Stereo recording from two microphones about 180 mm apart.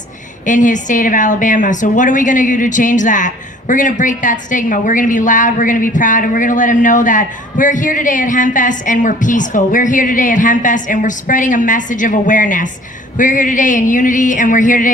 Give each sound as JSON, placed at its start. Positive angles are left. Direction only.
{"t": 0.4, "sound": "a woman's voice", "side_deg": 45}